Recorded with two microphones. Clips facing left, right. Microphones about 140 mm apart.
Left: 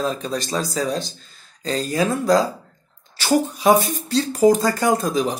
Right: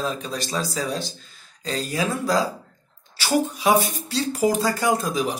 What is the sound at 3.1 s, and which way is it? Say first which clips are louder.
Speech: left 3 dB; 45° left (ahead or behind).